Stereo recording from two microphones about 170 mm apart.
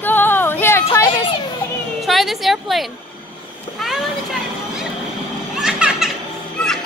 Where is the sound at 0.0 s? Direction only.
10° left (ahead or behind).